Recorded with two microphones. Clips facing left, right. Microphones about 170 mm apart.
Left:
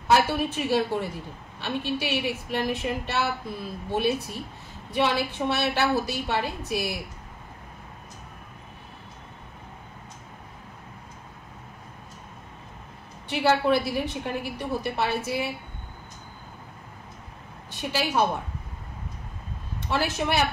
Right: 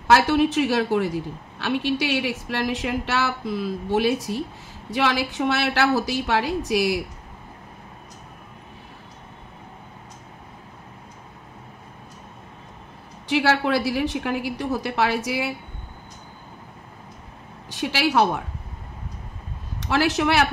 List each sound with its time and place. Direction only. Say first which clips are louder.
0.1 s a woman's voice: right 5 dB; 90° right
13.3 s a woman's voice: right 1 dB; 90° right
17.6 s a woman's voice: right 5 dB; 90° right
19.8 s a woman's voice: right 6 dB; 90° right